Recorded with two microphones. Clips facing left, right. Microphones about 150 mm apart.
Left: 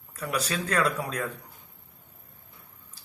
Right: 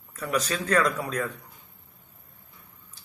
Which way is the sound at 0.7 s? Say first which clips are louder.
Right 3 dB; 10° left (ahead or behind).